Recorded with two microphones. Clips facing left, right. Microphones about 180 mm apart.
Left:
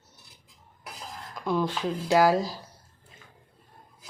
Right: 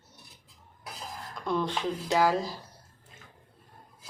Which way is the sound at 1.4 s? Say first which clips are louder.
Left 2 dB; 5° left (ahead or behind).